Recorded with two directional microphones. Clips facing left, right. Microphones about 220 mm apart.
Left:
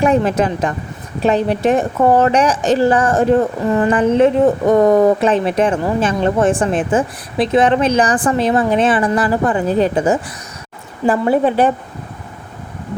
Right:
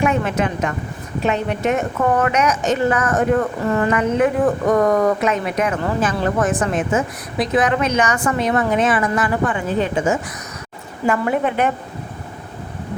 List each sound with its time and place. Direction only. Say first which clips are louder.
0.0 s speech: left 5 dB; 35° left (ahead or behind)